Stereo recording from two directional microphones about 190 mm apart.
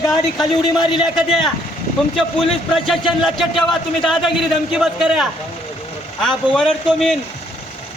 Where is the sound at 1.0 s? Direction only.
Centre (ahead or behind).